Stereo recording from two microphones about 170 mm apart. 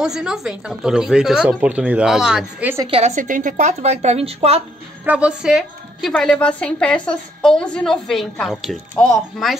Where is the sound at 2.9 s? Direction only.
40° right (ahead or behind).